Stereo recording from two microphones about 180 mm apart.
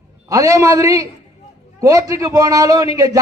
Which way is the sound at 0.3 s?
20° right (ahead or behind).